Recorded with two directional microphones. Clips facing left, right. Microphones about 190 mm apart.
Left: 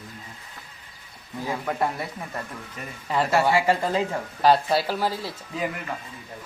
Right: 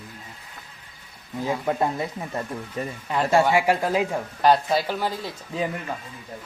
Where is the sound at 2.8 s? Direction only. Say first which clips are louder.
Right 9 dB; 35° right (ahead or behind).